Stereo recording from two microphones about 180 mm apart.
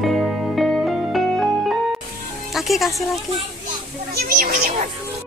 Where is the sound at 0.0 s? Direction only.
Centre (ahead or behind).